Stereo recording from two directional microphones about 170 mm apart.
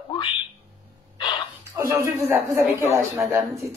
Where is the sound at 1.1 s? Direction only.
30° left (ahead or behind).